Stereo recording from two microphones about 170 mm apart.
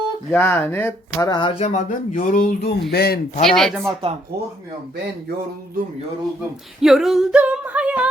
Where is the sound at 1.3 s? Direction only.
30° left (ahead or behind); by 3.2 s 65° left (ahead or behind).